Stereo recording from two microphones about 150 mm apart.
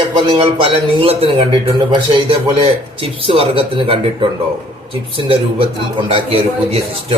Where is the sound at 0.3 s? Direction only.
40° right (ahead or behind).